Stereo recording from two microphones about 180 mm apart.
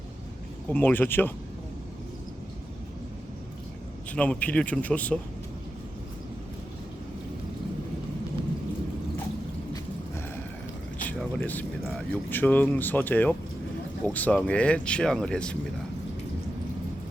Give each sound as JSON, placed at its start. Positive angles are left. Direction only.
{"t": 0.7, "sound": "speech", "side_deg": 10}
{"t": 4.1, "sound": "speech", "side_deg": 5}
{"t": 11.2, "sound": "speech", "side_deg": 10}